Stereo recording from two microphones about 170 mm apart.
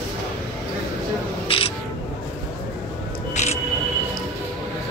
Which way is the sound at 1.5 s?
35° left (ahead or behind).